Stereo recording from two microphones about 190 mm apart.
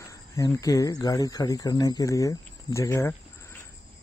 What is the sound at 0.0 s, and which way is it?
Speech, 15° left (ahead or behind).